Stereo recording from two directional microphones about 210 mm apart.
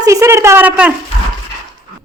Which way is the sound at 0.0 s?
15° right (ahead or behind).